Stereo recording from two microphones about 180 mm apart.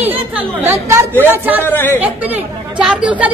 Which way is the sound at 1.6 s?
10° left (ahead or behind).